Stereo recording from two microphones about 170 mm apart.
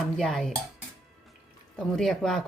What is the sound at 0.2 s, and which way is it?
Speech, centre (ahead or behind).